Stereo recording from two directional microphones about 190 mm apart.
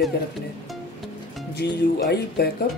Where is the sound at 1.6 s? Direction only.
60° left (ahead or behind).